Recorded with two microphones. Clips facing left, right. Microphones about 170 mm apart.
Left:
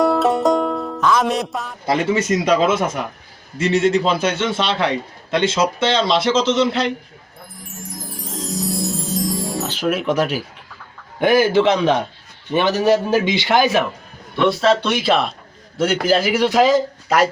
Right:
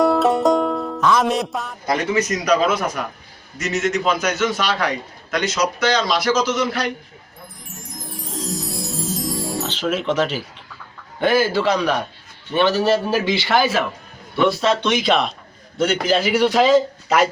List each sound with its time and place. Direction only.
0.0 s music: centre (ahead or behind)
1.9 s a man's voice: 25° left (ahead or behind)
8.0 s music: centre (ahead or behind)
9.6 s a man's voice: 10° left (ahead or behind)
14.3 s a man's voice: centre (ahead or behind)